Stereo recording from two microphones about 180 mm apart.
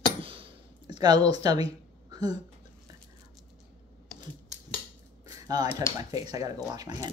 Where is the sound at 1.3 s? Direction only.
20° right (ahead or behind).